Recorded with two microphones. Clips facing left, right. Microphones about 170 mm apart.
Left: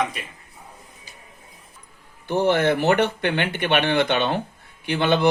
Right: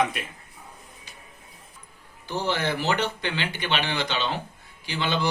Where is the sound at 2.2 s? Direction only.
55° left (ahead or behind).